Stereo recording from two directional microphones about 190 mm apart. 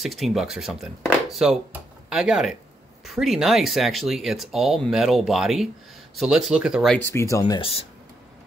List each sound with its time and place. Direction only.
0.0 s speech: centre (ahead or behind)
7.0 s speech: 15° left (ahead or behind)